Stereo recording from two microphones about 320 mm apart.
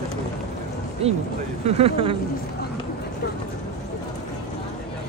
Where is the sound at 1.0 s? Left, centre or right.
Centre.